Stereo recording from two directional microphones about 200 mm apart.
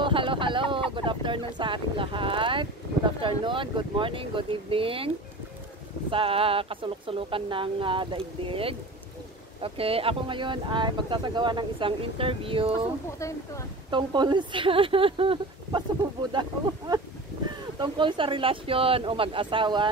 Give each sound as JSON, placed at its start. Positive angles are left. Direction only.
{"t": 0.0, "sound": "a sound", "side_deg": -25}
{"t": 3.2, "sound": "speech", "side_deg": -25}
{"t": 13.8, "sound": "speech", "side_deg": -25}